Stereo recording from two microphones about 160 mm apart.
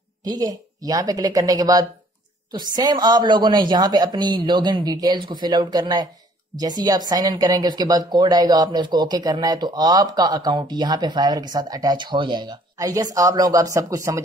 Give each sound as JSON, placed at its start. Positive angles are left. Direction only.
{"t": 0.2, "sound": "speech", "side_deg": -25}